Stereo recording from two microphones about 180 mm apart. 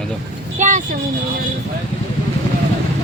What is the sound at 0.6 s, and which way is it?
Vehicle, 45° right (ahead or behind).